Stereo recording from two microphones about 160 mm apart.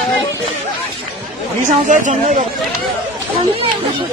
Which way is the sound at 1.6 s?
50° right (ahead or behind).